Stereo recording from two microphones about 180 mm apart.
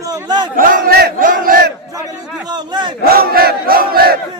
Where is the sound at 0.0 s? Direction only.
20° right (ahead or behind).